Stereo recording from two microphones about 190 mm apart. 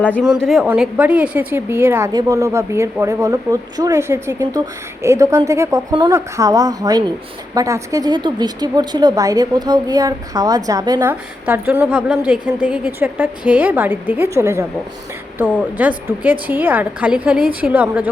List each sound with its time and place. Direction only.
0.2 s a woman's voice: centre (ahead or behind)